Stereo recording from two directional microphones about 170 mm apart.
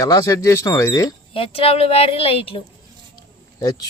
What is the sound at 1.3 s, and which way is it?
Speech, 35° left (ahead or behind).